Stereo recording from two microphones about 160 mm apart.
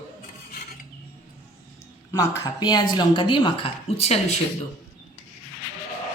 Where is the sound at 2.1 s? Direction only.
25° left (ahead or behind); by 4.4 s 40° left (ahead or behind).